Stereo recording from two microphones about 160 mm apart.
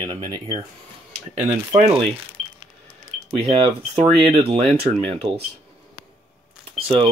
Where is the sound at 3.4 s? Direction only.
35° right (ahead or behind).